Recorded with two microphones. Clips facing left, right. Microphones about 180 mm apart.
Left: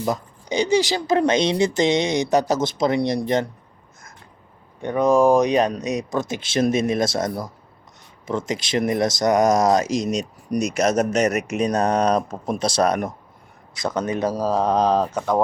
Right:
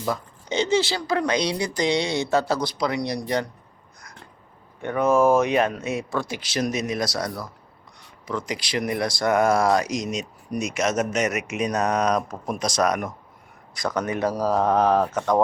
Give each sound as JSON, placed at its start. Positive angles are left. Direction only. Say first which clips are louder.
{"t": 0.0, "sound": "speech", "louder": "left 3 dB", "side_deg": 15}
{"t": 4.8, "sound": "speech", "louder": "left 2 dB", "side_deg": 15}